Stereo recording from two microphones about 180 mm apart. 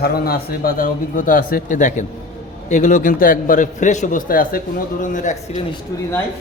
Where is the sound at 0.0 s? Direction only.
60° left (ahead or behind).